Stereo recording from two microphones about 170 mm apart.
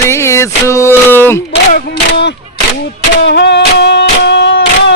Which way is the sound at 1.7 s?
90° left.